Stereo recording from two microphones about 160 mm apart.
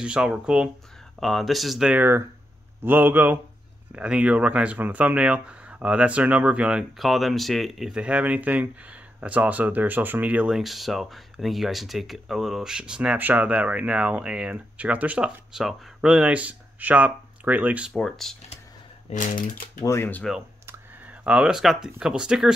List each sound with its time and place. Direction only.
0.0 s speech: 5° right (ahead or behind)
17.9 s speech: centre (ahead or behind)
19.0 s speech: 50° left (ahead or behind)
19.8 s speech: 15° left (ahead or behind)
20.6 s clicking: 10° right (ahead or behind)
22.0 s speech: 5° right (ahead or behind)